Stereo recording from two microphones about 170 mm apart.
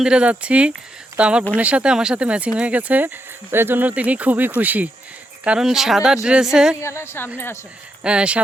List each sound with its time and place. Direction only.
0.0 s speech: 5° right (ahead or behind)
6.7 s a woman's voice: 15° left (ahead or behind)
8.0 s speech: 5° right (ahead or behind)